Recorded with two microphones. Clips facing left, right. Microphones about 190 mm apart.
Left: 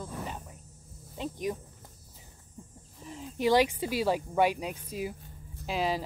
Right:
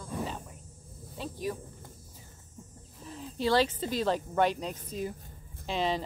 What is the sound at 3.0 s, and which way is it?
Speech, 15° left (ahead or behind).